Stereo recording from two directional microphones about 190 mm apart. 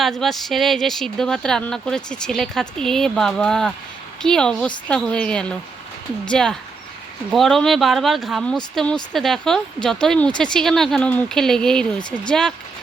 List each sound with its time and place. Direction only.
0.0 s speech: centre (ahead or behind)